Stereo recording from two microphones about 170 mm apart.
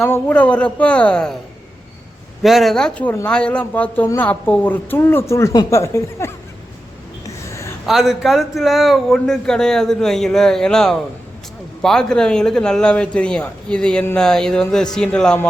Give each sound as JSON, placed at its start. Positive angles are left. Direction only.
{"t": 0.0, "sound": "speech", "side_deg": 10}
{"t": 2.4, "sound": "speech", "side_deg": 0}
{"t": 7.4, "sound": "a sound", "side_deg": 15}
{"t": 7.9, "sound": "speech", "side_deg": 0}